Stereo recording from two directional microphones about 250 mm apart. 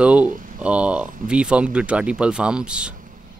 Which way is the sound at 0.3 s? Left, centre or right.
Right.